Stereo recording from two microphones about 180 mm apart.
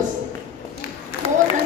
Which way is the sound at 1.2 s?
30° left (ahead or behind).